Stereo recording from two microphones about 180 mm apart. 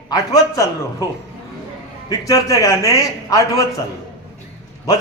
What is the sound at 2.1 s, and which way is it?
A man's voice, 20° left (ahead or behind).